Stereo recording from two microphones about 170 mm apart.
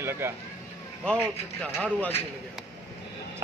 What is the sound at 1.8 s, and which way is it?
Speech, 10° left (ahead or behind).